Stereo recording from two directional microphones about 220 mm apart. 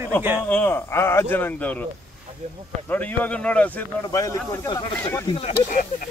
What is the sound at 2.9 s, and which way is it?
Speech, 10° left (ahead or behind).